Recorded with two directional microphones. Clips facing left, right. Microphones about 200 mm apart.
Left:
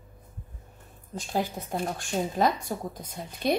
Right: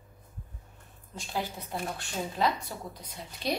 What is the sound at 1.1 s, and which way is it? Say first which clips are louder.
A woman's voice: left 5 dB; 45° left (ahead or behind).